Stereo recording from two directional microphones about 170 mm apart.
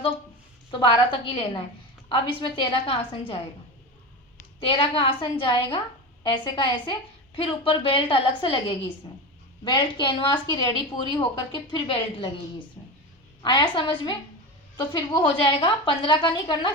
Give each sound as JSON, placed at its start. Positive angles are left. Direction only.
{"t": 0.7, "sound": "a woman's voice", "side_deg": 30}
{"t": 4.6, "sound": "a woman's voice", "side_deg": 30}